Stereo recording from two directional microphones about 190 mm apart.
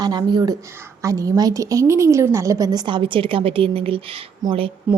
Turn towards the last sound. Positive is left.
turn(degrees=-5)  # may be behind; listen again after turning